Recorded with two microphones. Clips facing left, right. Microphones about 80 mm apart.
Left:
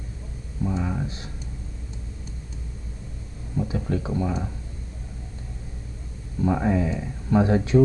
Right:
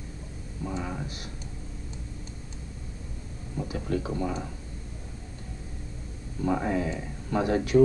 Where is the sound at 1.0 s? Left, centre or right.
Left.